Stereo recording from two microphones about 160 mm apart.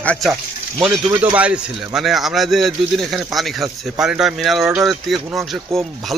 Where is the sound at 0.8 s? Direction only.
10° right (ahead or behind).